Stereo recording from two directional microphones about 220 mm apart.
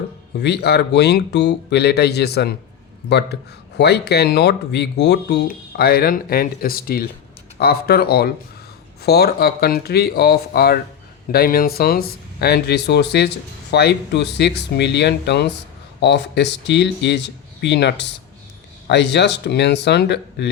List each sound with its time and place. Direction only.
0.3 s speech: 50° left (ahead or behind)